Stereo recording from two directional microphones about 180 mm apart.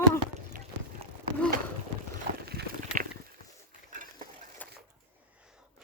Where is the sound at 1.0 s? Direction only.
35° right (ahead or behind).